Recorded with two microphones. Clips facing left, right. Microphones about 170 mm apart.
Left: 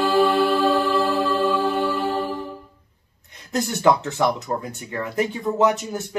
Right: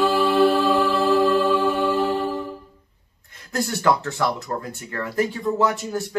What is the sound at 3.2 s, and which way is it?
Speech, 20° left (ahead or behind).